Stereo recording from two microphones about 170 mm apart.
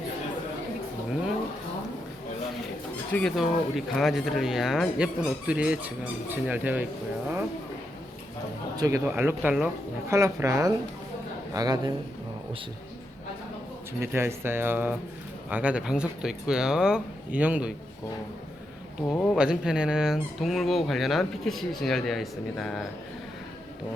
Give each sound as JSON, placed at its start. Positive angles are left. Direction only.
{"t": 3.1, "sound": "speech", "side_deg": 5}
{"t": 8.7, "sound": "a man's voice", "side_deg": -20}
{"t": 9.0, "sound": "a man's voice", "side_deg": -10}
{"t": 14.0, "sound": "speech", "side_deg": -15}
{"t": 19.1, "sound": "speech", "side_deg": 10}
{"t": 19.4, "sound": "speech", "side_deg": -5}